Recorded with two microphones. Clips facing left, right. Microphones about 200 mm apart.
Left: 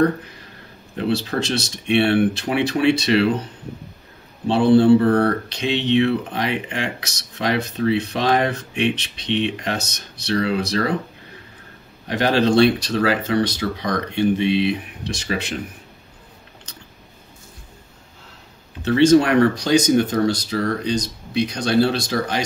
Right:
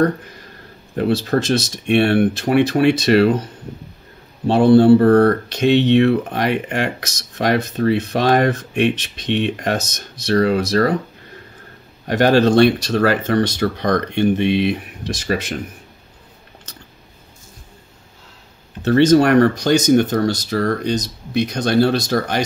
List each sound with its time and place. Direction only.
0.9 s speech: 45° right (ahead or behind)
4.5 s speech: 45° right (ahead or behind)
12.1 s speech: 50° right (ahead or behind)
18.9 s speech: 50° right (ahead or behind)